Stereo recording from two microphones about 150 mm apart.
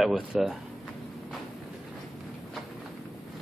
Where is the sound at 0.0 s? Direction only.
Centre (ahead or behind).